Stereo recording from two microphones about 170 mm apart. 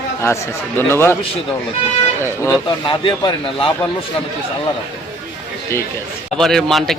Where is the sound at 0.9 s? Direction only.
15° left (ahead or behind).